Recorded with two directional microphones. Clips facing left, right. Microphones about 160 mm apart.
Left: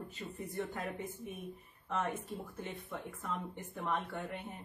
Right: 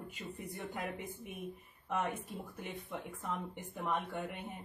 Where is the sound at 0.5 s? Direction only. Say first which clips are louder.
Left 3 dB; 15° right (ahead or behind).